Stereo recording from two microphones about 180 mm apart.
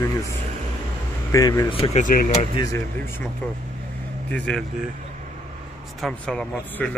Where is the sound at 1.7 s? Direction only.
30° left (ahead or behind).